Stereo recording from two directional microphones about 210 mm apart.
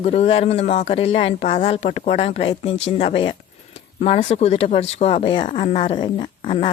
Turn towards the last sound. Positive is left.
turn(degrees=25)  # may be behind; listen again after turning